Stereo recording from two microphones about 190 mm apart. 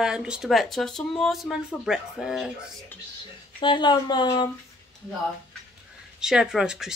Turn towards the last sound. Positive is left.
turn(degrees=0)  # may be behind; listen again after turning